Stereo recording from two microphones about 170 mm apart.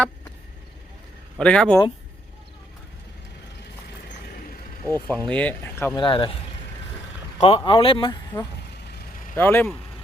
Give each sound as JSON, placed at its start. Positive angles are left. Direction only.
{"t": 1.4, "sound": "speech", "side_deg": 5}
{"t": 4.9, "sound": "speech", "side_deg": -20}
{"t": 5.3, "sound": "speech", "side_deg": 10}
{"t": 5.9, "sound": "speech", "side_deg": 30}
{"t": 7.4, "sound": "speech", "side_deg": 30}
{"t": 8.9, "sound": "vehicle", "side_deg": 70}
{"t": 9.3, "sound": "speech", "side_deg": 15}